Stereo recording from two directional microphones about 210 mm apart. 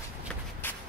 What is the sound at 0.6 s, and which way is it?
Shuffle, 10° left (ahead or behind).